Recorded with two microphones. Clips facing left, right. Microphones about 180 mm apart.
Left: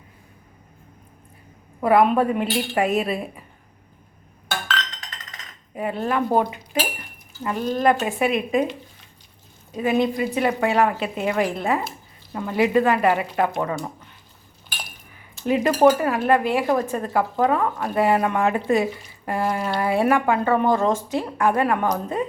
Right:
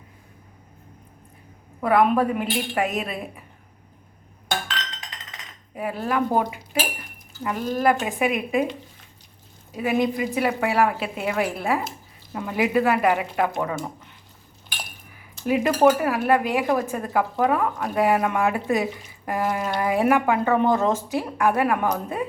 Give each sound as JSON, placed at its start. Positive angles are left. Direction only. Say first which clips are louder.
{"t": 1.8, "sound": "a woman's voice", "louder": "left 2 dB", "side_deg": 0}
{"t": 5.7, "sound": "a woman's voice", "louder": "left 1 dB", "side_deg": -5}
{"t": 9.7, "sound": "a woman's voice", "louder": "left 2 dB", "side_deg": -10}
{"t": 15.4, "sound": "a woman's voice", "louder": "left 1 dB", "side_deg": -10}
{"t": 20.8, "sound": "speech", "louder": "left 1 dB", "side_deg": 15}
{"t": 21.5, "sound": "a woman's voice", "louder": "left 1 dB", "side_deg": -10}